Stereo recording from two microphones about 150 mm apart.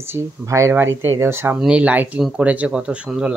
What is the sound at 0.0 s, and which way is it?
Speech, 15° right (ahead or behind).